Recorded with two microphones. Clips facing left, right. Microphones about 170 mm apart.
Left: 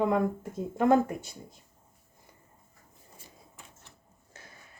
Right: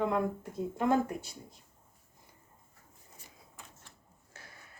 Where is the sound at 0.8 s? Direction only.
50° left (ahead or behind).